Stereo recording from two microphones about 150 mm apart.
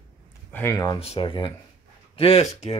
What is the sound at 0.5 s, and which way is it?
Speech, 20° left (ahead or behind).